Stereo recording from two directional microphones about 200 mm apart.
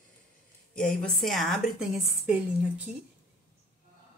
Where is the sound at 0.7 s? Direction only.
5° left (ahead or behind).